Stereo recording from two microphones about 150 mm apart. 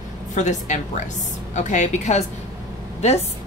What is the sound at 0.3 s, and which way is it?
A woman's voice, 55° left (ahead or behind).